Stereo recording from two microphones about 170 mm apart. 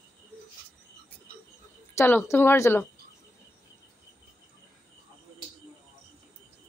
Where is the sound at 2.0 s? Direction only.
15° left (ahead or behind).